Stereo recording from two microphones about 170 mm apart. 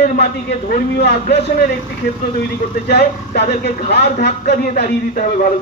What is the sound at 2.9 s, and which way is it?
A man's voice, 70° left (ahead or behind).